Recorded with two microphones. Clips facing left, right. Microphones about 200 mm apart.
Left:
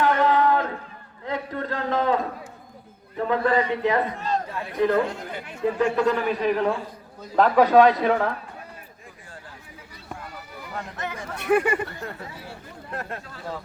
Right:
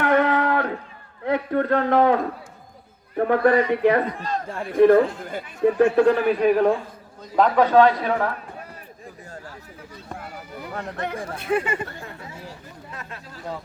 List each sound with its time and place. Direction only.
0.0 s a sound: 60° right (ahead or behind)
1.2 s a man's voice: 60° right (ahead or behind)
7.2 s a man's voice: 5° left (ahead or behind)
10.8 s a man's voice: 60° right (ahead or behind)
11.3 s speech: 65° left (ahead or behind)